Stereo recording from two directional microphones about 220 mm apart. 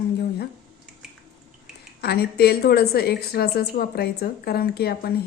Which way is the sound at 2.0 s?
45° left (ahead or behind).